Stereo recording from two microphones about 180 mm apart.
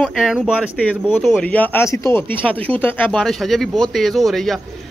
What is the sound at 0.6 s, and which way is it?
Speech, 10° left (ahead or behind).